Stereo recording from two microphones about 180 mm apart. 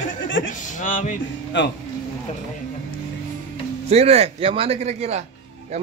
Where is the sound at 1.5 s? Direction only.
80° left.